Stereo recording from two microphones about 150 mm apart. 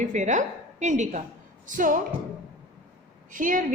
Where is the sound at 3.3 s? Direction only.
65° right (ahead or behind).